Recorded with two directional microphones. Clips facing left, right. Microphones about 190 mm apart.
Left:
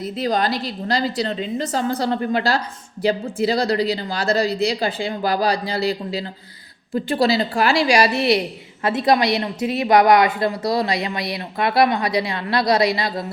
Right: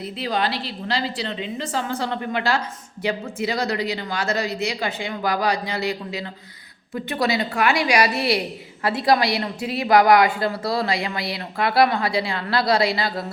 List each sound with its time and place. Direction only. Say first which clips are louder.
0.0 s a woman's voice: left 4 dB; 40° left (ahead or behind); by 13.1 s 20° left (ahead or behind)